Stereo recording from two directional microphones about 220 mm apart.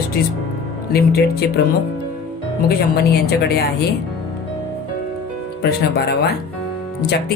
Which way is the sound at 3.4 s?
45° left (ahead or behind).